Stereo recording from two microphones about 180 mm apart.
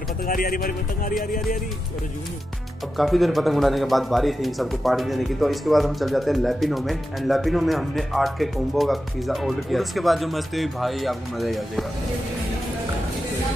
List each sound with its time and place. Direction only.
0.3 s speech: 55° left (ahead or behind)
3.0 s speech: centre (ahead or behind)